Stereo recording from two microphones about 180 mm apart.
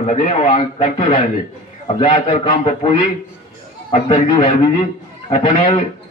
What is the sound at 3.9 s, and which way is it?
A man's voice, 35° left (ahead or behind).